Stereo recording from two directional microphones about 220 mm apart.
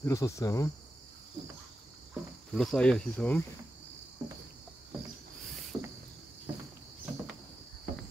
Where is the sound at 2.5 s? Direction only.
Centre (ahead or behind).